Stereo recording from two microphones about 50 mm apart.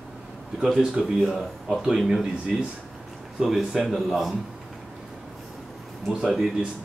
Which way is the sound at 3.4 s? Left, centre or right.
Centre.